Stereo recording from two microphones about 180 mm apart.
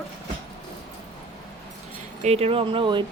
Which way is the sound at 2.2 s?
35° right (ahead or behind).